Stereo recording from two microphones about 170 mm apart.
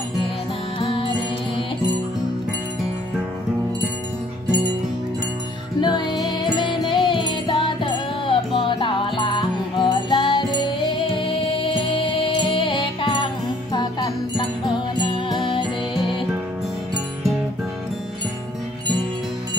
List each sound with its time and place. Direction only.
0.7 s music: 30° left (ahead or behind)
5.8 s music: 25° left (ahead or behind)